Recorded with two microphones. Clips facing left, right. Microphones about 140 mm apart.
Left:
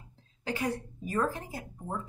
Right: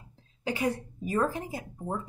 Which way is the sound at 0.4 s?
10° right (ahead or behind).